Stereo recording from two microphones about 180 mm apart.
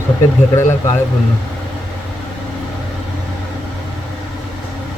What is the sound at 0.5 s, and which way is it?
Speech, 15° left (ahead or behind).